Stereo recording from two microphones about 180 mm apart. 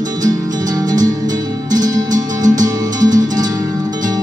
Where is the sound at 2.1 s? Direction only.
45° right (ahead or behind).